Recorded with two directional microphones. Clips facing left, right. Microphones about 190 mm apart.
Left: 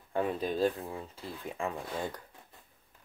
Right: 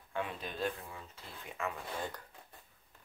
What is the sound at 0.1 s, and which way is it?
Speech, 40° left (ahead or behind).